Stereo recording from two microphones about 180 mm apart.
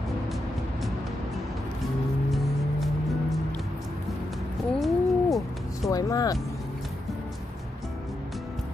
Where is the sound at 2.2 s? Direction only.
Centre (ahead or behind).